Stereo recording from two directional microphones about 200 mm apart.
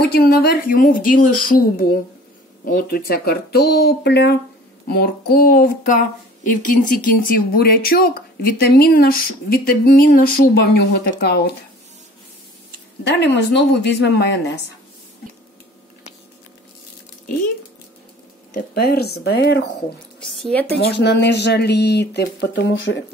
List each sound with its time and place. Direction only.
0.1 s speech: 50° left (ahead or behind)
13.0 s speech: 60° left (ahead or behind)
18.5 s speech: 50° left (ahead or behind)
20.2 s speech: 5° left (ahead or behind)
20.7 s speech: 55° left (ahead or behind)